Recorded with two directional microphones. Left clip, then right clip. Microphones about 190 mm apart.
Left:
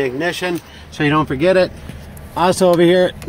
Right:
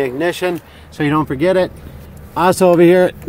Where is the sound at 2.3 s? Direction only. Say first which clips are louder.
Right 2 dB; 20° right (ahead or behind).